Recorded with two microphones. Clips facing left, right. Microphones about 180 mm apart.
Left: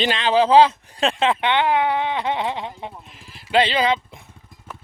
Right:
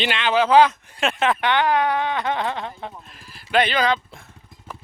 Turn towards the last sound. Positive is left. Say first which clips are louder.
# left 1 dB
turn(degrees=20)  # may be behind; listen again after turning